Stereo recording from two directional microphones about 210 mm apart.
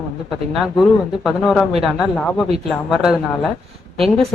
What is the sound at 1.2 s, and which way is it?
A woman's voice, centre (ahead or behind).